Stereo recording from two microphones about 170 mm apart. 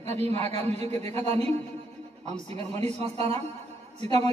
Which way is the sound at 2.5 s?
40° right (ahead or behind).